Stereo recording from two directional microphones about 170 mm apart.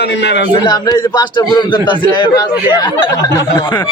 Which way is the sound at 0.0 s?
85° left.